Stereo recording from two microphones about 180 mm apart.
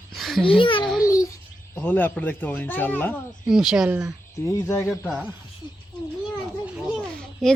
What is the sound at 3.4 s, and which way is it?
Speech, 5° right (ahead or behind).